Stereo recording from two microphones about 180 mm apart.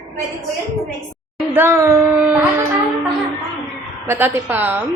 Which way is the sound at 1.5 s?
15° right (ahead or behind).